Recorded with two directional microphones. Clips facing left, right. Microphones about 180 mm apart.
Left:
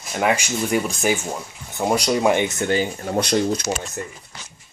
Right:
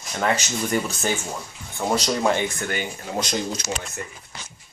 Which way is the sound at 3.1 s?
60° left (ahead or behind).